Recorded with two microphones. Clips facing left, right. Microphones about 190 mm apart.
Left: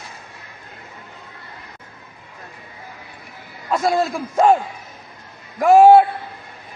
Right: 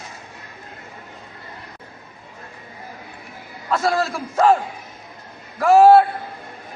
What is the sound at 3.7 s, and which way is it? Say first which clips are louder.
Speech: left 2 dB; 15° left (ahead or behind).